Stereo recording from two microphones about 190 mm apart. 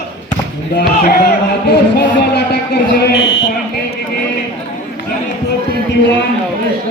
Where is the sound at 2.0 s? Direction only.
60° left (ahead or behind).